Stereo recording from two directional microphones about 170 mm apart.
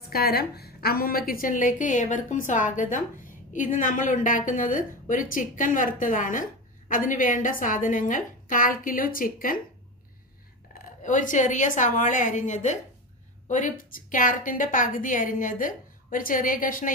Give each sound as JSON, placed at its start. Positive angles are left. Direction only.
{"t": 0.1, "sound": "a woman's voice", "side_deg": 65}
{"t": 11.0, "sound": "a woman's voice", "side_deg": 50}